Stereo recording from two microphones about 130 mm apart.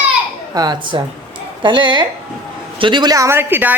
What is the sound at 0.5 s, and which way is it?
A woman's voice, 30° right (ahead or behind).